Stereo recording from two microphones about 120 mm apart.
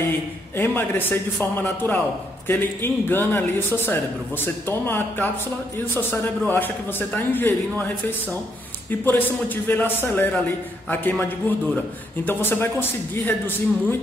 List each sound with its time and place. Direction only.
0.6 s speech: 15° left (ahead or behind)
9.0 s speech: 15° left (ahead or behind)